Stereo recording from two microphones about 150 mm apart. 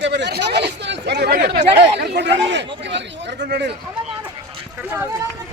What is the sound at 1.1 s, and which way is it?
Speech, 90° right.